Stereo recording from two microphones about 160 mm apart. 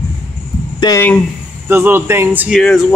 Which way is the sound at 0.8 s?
20° left (ahead or behind).